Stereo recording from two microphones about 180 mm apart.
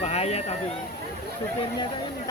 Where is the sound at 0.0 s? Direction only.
35° left (ahead or behind).